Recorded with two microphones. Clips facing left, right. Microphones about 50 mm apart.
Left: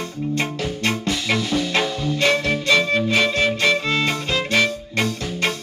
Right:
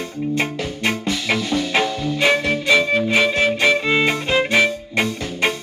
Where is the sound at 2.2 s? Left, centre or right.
Centre.